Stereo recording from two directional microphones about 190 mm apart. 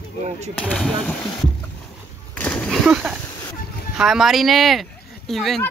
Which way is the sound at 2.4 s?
5° left (ahead or behind).